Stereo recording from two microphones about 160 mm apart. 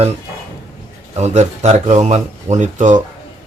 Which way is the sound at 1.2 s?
45° right (ahead or behind).